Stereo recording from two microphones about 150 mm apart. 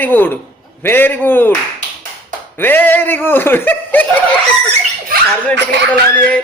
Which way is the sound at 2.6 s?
15° left (ahead or behind).